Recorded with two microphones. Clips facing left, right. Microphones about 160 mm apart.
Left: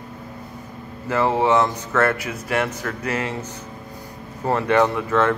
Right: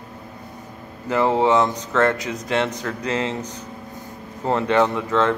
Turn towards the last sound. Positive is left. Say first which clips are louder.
# even
turn(degrees=-15)  # may be behind; listen again after turning